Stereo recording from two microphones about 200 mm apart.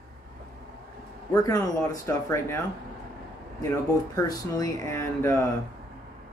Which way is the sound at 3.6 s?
15° left (ahead or behind).